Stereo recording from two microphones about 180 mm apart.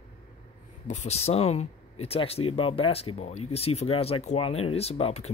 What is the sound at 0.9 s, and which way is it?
Speech, 35° left (ahead or behind).